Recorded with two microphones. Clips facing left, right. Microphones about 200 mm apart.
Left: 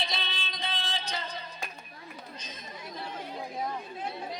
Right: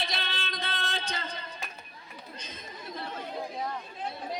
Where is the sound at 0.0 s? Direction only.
55° right (ahead or behind).